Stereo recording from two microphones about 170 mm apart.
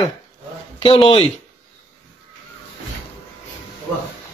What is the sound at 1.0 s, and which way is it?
Speech, 35° left (ahead or behind).